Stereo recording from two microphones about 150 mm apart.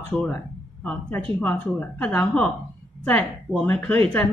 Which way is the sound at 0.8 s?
10° left (ahead or behind).